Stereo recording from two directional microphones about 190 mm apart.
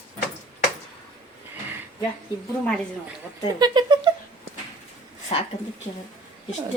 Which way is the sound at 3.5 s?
20° right (ahead or behind).